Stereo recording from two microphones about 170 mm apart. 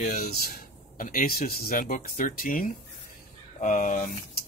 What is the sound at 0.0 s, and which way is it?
Speech, 55° left (ahead or behind).